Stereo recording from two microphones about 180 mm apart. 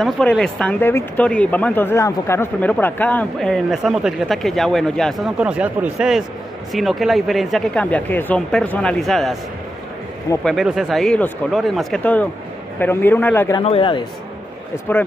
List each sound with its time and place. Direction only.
0.0 s speech: 5° left (ahead or behind)
10.4 s a man's voice: centre (ahead or behind)
13.6 s a man's voice: 30° left (ahead or behind)
14.9 s a man's voice: 10° left (ahead or behind)